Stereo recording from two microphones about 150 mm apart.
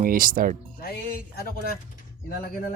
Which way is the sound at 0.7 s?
90° left.